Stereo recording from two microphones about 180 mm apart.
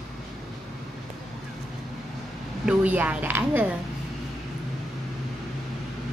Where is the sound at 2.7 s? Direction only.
10° right (ahead or behind).